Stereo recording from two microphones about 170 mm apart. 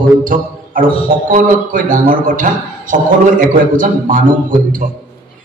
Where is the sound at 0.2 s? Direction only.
55° right (ahead or behind).